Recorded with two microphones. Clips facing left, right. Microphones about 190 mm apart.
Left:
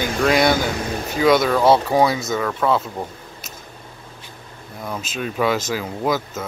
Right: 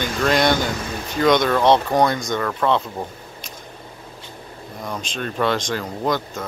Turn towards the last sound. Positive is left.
turn(degrees=5)  # may be behind; listen again after turning